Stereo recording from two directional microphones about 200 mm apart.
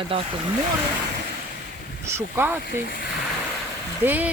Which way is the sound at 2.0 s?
10° right (ahead or behind).